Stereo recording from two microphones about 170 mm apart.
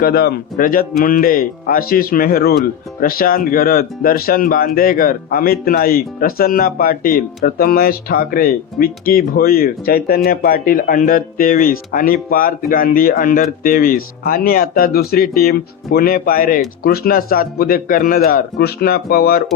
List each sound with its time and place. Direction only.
0.0 s speech: 65° left (ahead or behind)